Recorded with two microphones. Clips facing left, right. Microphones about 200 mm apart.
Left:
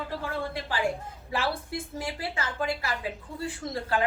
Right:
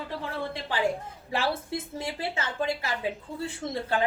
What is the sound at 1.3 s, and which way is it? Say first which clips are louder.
A woman's voice: right 1 dB; 25° right (ahead or behind).